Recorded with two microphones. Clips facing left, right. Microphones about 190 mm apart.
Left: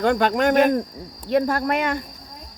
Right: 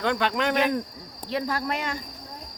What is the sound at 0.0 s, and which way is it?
Speech, 45° left (ahead or behind).